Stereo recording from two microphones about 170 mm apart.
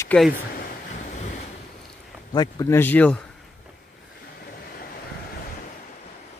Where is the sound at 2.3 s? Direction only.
20° left (ahead or behind).